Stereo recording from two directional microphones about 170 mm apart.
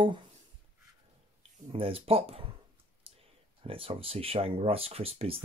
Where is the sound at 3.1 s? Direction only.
35° right (ahead or behind).